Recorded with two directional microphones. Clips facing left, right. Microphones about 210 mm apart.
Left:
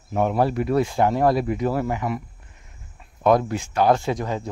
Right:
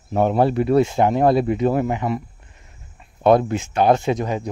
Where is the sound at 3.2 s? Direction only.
25° right (ahead or behind).